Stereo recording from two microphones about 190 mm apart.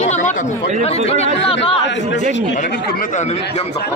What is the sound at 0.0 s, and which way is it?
Chatter, 40° left (ahead or behind).